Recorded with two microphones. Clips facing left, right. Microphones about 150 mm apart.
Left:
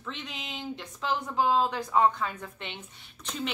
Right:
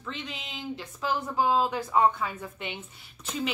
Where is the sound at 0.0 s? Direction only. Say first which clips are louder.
Right 1 dB; centre (ahead or behind).